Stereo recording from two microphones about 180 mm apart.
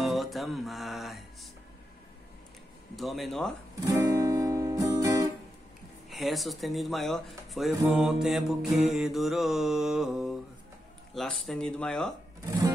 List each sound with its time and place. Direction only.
0.0 s music: centre (ahead or behind)
3.0 s mantra: centre (ahead or behind)
3.8 s guitar: 20° right (ahead or behind)
6.0 s mantra: centre (ahead or behind)
12.4 s music: 20° right (ahead or behind)